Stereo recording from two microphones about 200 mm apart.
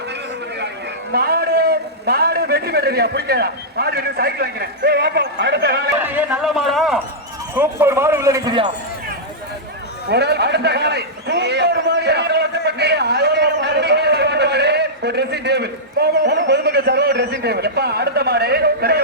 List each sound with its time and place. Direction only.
1.1 s a man's voice: 50° right (ahead or behind)
6.0 s speech: 10° right (ahead or behind)
7.5 s a man's voice: 10° right (ahead or behind)
10.1 s a man's voice: 55° right (ahead or behind)